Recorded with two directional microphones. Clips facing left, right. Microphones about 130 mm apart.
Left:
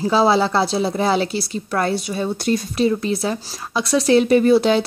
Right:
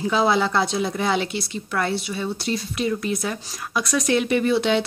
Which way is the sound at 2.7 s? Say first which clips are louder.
Left 4 dB; 30° left (ahead or behind).